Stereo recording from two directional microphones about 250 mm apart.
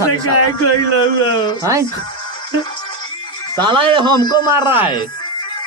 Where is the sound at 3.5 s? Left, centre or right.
Centre.